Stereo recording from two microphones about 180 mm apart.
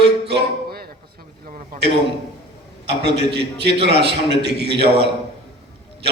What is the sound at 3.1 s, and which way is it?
A man's voice, 65° right (ahead or behind).